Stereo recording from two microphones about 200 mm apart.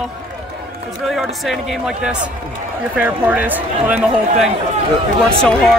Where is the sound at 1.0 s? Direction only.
Centre (ahead or behind).